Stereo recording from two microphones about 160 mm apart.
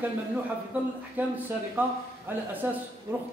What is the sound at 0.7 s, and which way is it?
A man's voice, 10° right (ahead or behind).